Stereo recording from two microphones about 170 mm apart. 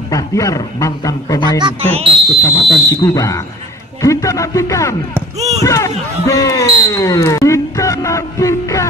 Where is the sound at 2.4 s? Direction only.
20° left (ahead or behind).